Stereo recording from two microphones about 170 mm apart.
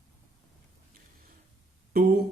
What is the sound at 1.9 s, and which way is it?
Speech, 65° right (ahead or behind).